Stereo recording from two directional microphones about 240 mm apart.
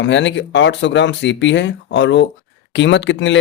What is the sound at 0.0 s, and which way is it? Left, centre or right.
Speech, left.